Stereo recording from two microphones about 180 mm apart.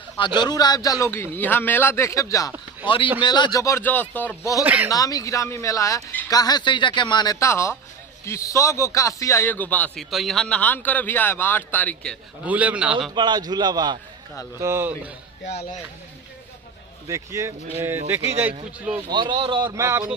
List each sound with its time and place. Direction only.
0.2 s speech: 25° left (ahead or behind)
4.6 s speech: 10° right (ahead or behind)
4.9 s speech: 20° left (ahead or behind)
12.5 s speech: 10° right (ahead or behind)
13.1 s a man's voice: 25° right (ahead or behind)
14.6 s speech: 15° right (ahead or behind)
17.1 s speech: 15° right (ahead or behind)
19.1 s a man's voice: 25° right (ahead or behind)
19.6 s speech: 15° right (ahead or behind)